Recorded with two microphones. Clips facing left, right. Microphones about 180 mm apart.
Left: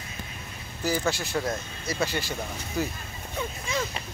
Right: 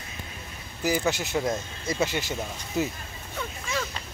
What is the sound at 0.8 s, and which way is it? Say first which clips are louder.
Speech: right 2 dB; 15° right (ahead or behind).